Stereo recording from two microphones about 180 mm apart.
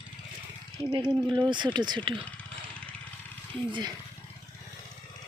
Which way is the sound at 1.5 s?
25° right (ahead or behind).